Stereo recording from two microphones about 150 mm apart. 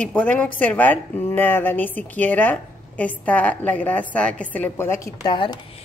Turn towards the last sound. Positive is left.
turn(degrees=30)  # may be behind; listen again after turning